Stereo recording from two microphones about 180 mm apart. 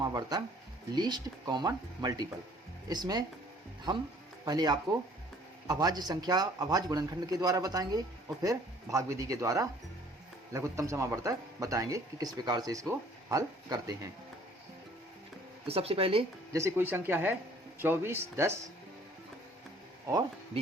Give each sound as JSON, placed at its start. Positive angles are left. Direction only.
{"t": 0.0, "sound": "speech", "side_deg": -20}
{"t": 15.6, "sound": "speech", "side_deg": -35}
{"t": 16.5, "sound": "speech", "side_deg": -15}